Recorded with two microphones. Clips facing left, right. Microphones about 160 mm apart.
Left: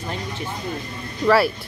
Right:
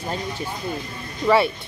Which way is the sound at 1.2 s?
Centre (ahead or behind).